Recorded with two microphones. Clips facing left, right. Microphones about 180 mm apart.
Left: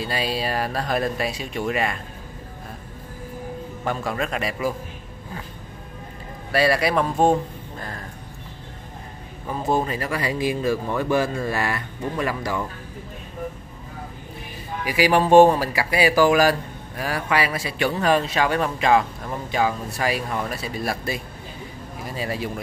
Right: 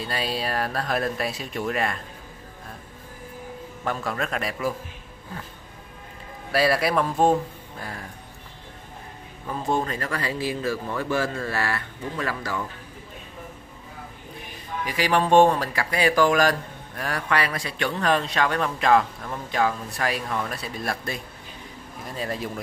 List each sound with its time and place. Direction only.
0.0 s speech: centre (ahead or behind)
3.8 s speech: centre (ahead or behind)
6.5 s speech: centre (ahead or behind)
9.5 s speech: 5° left (ahead or behind)
14.9 s speech: 10° left (ahead or behind)